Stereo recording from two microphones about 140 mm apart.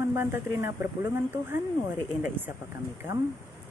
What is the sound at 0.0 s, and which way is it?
A woman's voice, 15° right (ahead or behind).